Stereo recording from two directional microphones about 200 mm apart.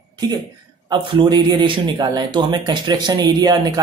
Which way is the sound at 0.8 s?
20° right (ahead or behind).